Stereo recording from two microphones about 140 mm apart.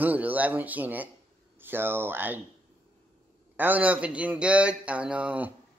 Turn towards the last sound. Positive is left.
turn(degrees=-10)  # may be behind; listen again after turning